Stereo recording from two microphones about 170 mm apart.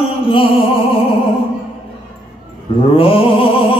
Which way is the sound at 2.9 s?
35° left (ahead or behind).